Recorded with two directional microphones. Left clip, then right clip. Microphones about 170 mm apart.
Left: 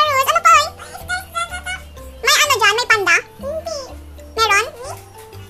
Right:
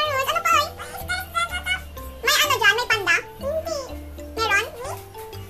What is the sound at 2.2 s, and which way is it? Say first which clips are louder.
Music: left 5 dB; 35° left (ahead or behind).